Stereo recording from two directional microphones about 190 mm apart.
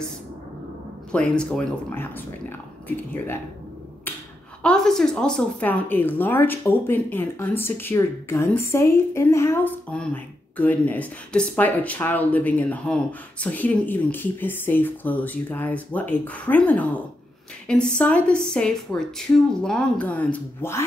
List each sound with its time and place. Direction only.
1.1 s a woman's voice: 5° left (ahead or behind)
4.6 s a woman's voice: centre (ahead or behind)